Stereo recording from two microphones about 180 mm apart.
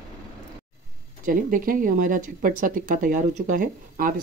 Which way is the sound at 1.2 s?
50° right (ahead or behind).